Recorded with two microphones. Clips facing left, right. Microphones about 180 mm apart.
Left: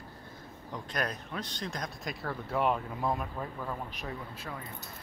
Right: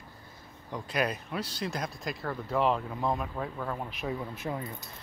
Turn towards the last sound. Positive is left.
turn(degrees=-15)  # may be behind; listen again after turning